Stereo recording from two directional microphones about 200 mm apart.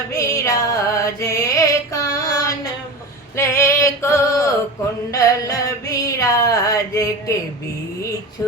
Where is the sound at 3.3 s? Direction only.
15° left (ahead or behind).